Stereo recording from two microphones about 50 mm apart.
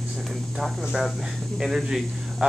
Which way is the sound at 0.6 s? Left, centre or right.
Centre.